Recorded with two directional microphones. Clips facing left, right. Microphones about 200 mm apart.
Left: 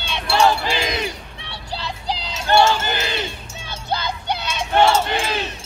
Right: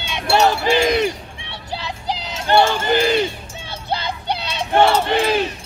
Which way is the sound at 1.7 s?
20° right (ahead or behind).